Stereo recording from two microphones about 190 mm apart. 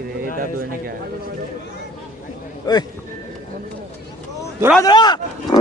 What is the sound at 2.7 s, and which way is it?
Speech, 20° left (ahead or behind).